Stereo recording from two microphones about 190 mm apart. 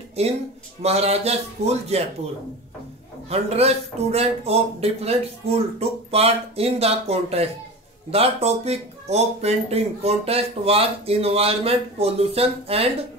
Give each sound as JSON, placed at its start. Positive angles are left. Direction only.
{"t": 0.2, "sound": "speech", "side_deg": -30}
{"t": 3.3, "sound": "speech", "side_deg": -35}